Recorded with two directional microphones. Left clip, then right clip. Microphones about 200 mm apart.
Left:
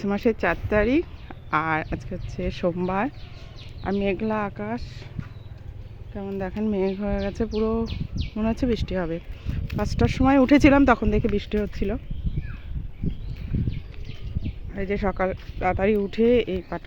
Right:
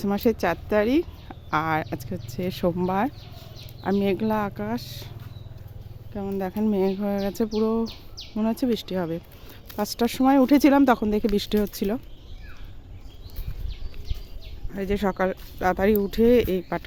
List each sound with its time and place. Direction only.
0.0 s speech: 10° right (ahead or behind)
6.1 s speech: 20° right (ahead or behind)
10.3 s speech: 5° right (ahead or behind); by 11.9 s 20° right (ahead or behind)
14.7 s speech: 15° right (ahead or behind)